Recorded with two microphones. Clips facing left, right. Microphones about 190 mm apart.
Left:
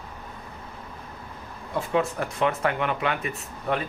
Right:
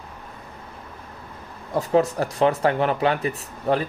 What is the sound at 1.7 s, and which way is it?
Speech, 40° right (ahead or behind).